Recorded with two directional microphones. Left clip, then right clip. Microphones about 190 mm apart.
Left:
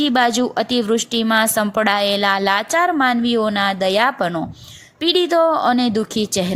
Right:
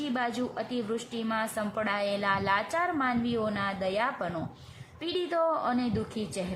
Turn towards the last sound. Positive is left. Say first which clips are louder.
# left 14 dB
turn(degrees=35)  # may be behind; listen again after turning